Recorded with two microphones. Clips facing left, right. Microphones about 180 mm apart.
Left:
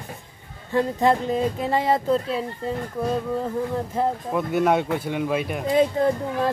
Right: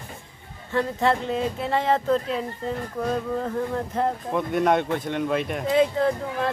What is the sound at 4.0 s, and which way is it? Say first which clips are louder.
Speech: left 1 dB; 5° left (ahead or behind).